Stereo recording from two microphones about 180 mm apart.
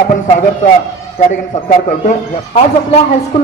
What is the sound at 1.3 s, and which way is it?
Speech, 50° left (ahead or behind).